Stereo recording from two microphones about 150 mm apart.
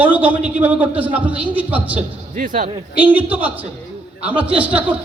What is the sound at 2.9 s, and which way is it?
A man's voice, 10° right (ahead or behind).